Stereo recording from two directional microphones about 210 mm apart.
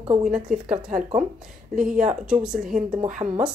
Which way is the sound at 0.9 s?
35° right (ahead or behind).